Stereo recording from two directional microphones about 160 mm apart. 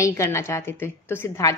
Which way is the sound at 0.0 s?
15° left (ahead or behind).